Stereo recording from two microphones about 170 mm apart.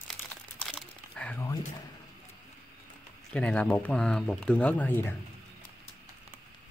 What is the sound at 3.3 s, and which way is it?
Speech, 5° left (ahead or behind).